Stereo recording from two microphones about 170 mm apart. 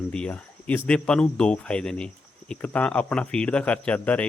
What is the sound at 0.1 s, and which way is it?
Speech, 5° left (ahead or behind).